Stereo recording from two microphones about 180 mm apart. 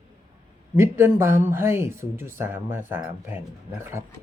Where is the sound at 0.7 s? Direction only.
15° right (ahead or behind).